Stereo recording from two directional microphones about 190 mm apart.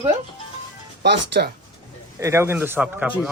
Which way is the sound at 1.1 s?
65° right (ahead or behind).